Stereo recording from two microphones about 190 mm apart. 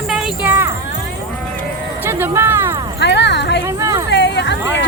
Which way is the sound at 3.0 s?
65° left (ahead or behind).